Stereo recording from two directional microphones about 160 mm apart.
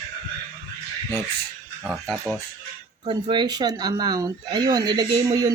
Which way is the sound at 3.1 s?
30° right (ahead or behind).